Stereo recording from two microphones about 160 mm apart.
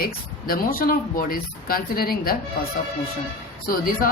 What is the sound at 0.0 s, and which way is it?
A woman's voice, 65° left (ahead or behind).